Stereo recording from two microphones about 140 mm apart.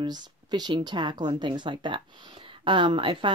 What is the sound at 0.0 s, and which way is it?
Speech, 30° right (ahead or behind).